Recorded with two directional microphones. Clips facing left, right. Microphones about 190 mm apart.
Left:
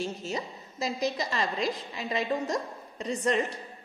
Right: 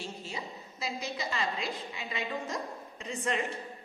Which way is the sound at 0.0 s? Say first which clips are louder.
Left 7 dB; 45° left (ahead or behind).